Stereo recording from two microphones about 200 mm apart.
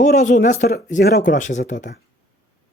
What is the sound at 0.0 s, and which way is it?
Speech, 40° left (ahead or behind).